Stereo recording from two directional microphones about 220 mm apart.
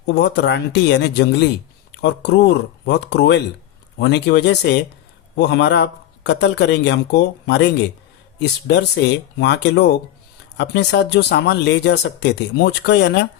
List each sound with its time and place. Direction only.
0.1 s speech: 50° left (ahead or behind)